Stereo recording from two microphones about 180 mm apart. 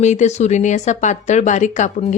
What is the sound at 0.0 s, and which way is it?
A woman's voice, 40° left (ahead or behind).